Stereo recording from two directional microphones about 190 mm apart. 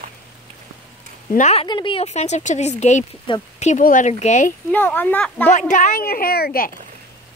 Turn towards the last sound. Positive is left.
turn(degrees=50)  # may be behind; listen again after turning